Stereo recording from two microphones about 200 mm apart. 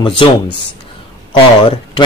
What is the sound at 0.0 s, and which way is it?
Speech, 25° left (ahead or behind).